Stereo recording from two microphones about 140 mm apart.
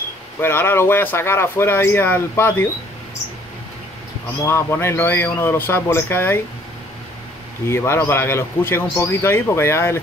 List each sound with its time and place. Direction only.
0.4 s speech: 15° left (ahead or behind)
4.5 s speech: 20° left (ahead or behind)
7.6 s speech: 20° left (ahead or behind)